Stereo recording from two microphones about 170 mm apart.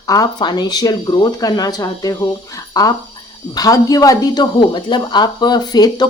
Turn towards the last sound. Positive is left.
turn(degrees=25)  # may be behind; listen again after turning